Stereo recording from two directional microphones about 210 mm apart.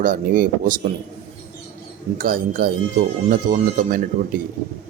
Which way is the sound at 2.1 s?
40° right (ahead or behind).